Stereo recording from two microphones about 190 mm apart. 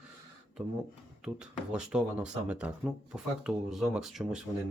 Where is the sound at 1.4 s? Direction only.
5° right (ahead or behind).